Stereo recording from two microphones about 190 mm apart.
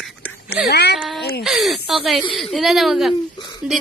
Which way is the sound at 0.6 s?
60° left (ahead or behind).